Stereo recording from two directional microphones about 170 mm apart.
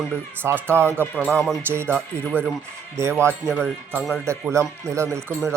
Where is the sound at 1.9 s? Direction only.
5° left (ahead or behind).